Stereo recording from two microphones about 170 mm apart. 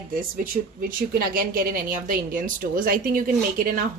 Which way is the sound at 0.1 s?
55° right (ahead or behind).